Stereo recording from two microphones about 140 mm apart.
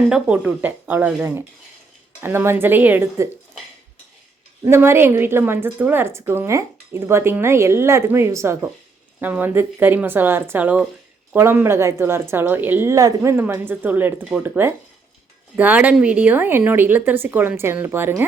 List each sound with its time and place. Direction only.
0.1 s a woman's voice: 10° right (ahead or behind)
4.6 s a woman's voice: 15° right (ahead or behind)